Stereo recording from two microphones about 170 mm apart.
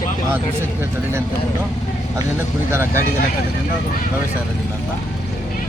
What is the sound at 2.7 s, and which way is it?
Speech, 15° right (ahead or behind).